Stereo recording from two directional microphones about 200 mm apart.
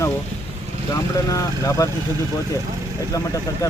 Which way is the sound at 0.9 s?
15° left (ahead or behind).